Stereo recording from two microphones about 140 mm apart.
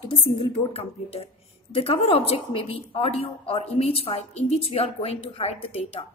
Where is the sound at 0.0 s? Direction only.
40° left (ahead or behind).